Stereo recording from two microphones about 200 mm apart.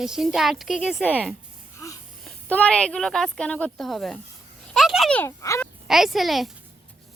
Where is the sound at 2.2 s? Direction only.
5° left (ahead or behind).